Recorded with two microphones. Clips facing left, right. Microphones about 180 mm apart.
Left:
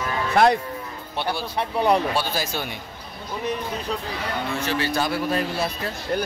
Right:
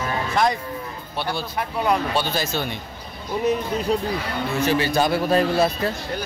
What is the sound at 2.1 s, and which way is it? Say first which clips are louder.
Speech: right 2 dB; 10° left (ahead or behind).